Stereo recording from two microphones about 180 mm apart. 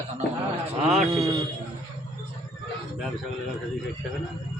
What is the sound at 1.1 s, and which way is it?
Speech, 15° right (ahead or behind).